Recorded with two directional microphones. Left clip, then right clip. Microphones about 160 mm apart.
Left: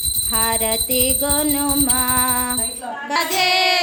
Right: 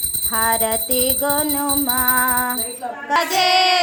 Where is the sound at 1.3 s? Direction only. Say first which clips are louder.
Even; 20° left (ahead or behind).